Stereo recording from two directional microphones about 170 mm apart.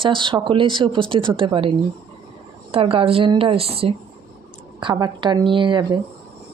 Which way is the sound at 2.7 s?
30° right (ahead or behind).